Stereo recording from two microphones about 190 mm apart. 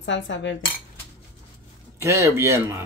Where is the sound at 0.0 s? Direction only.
70° left (ahead or behind).